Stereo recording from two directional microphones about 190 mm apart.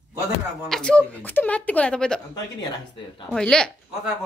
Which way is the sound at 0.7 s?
5° left (ahead or behind).